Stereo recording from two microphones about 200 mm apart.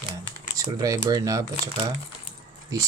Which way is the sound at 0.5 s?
15° right (ahead or behind).